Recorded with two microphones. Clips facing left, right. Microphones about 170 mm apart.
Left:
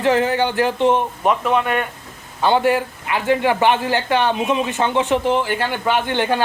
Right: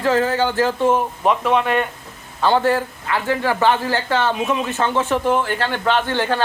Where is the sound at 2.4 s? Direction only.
15° left (ahead or behind).